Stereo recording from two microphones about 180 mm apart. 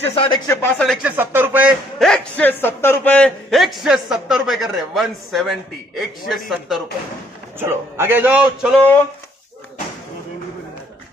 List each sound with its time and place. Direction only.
0.1 s speech: 30° left (ahead or behind)
0.5 s speech: 10° left (ahead or behind)
1.0 s speech: 10° right (ahead or behind)
7.5 s a man's voice: 15° right (ahead or behind)